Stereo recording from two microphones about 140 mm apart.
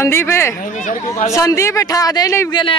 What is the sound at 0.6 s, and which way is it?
Speech, 70° left (ahead or behind).